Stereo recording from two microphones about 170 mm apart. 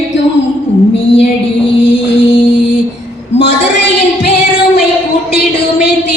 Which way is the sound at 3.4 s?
90° left.